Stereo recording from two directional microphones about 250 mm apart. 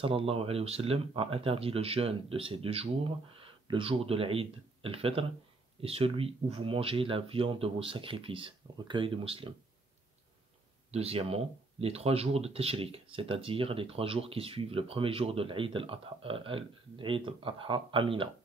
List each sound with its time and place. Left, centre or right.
0.0 s speech: right
10.9 s speech: right